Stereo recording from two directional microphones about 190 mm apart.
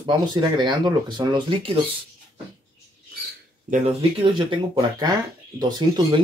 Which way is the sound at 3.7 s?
40° right (ahead or behind).